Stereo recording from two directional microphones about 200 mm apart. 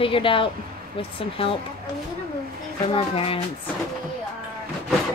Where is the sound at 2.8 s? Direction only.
30° left (ahead or behind).